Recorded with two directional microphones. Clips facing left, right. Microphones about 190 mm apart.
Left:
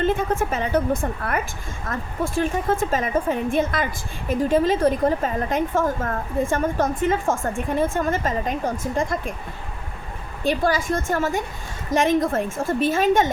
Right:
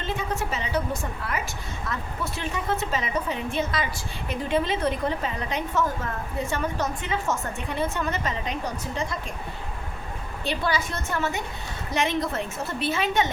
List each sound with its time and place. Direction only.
0.0 s a woman's voice: 50° left (ahead or behind)
1.8 s a woman's voice: 50° left (ahead or behind)
10.4 s a woman's voice: 45° left (ahead or behind)